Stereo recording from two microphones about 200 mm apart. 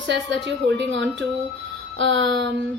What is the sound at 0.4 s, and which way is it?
A woman's voice, 65° right (ahead or behind).